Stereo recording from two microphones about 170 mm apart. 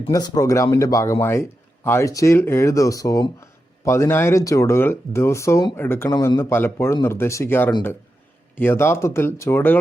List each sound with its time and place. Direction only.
0.1 s speech: 25° left (ahead or behind)